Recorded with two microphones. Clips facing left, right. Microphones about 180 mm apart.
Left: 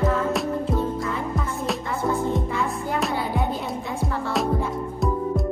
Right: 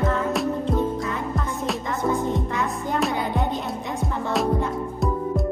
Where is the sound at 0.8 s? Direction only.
20° right (ahead or behind).